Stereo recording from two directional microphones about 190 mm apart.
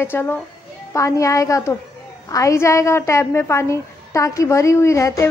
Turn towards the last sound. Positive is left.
turn(degrees=15)  # may be behind; listen again after turning